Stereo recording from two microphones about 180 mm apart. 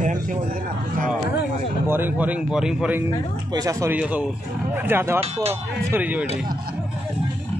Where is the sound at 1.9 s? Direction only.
10° right (ahead or behind).